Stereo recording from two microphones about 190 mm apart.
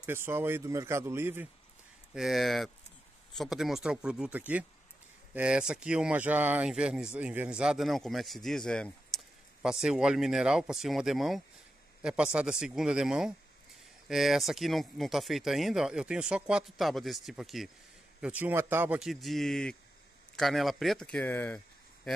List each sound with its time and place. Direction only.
0.0 s speech: 10° right (ahead or behind)
2.1 s speech: centre (ahead or behind)